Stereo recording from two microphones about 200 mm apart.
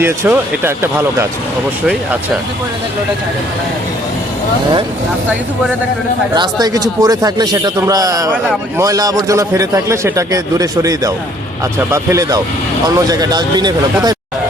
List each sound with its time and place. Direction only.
0.0 s a man's voice: 10° right (ahead or behind)
6.3 s a man's voice: 20° right (ahead or behind)